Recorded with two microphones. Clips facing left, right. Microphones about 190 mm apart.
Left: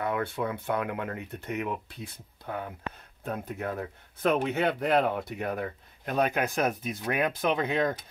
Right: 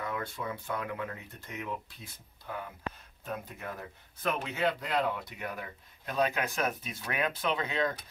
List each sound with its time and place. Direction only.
0.0 s speech: 60° left (ahead or behind)